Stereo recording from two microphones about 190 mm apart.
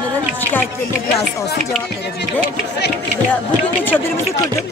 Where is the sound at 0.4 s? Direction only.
10° left (ahead or behind).